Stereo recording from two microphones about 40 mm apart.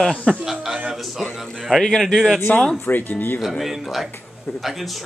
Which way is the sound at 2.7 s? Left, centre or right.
Left.